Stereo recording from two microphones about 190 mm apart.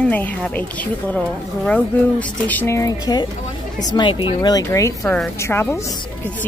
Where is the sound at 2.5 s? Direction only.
10° left (ahead or behind).